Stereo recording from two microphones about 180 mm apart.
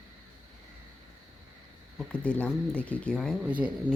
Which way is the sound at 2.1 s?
5° left (ahead or behind).